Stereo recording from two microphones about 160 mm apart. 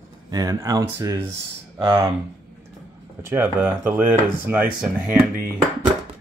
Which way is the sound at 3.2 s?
15° right (ahead or behind).